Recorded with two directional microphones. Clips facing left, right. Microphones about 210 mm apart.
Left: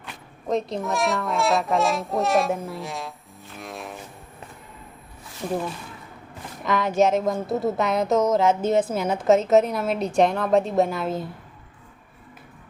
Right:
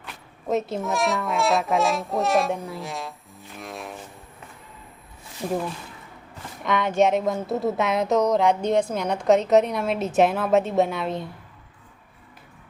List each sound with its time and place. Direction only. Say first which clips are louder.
0.4 s speech: even; 5° right (ahead or behind)
3.6 s music: even; centre (ahead or behind)
6.7 s speech: even; centre (ahead or behind)